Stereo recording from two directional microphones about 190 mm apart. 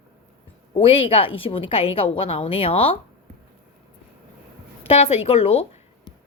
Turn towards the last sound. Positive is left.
turn(degrees=30)  # may be behind; listen again after turning